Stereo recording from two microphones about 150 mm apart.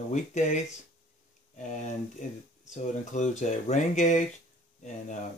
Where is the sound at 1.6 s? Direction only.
50° left (ahead or behind).